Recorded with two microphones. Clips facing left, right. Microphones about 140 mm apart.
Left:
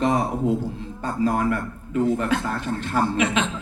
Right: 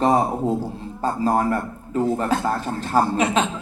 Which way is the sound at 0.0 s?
35° right (ahead or behind).